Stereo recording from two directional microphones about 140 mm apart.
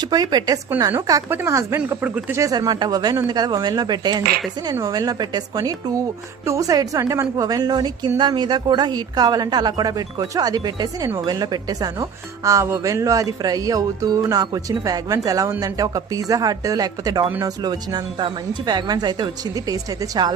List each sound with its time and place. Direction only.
0.0 s speech: 30° right (ahead or behind); by 2.4 s 10° right (ahead or behind)
2.4 s speech: 25° right (ahead or behind)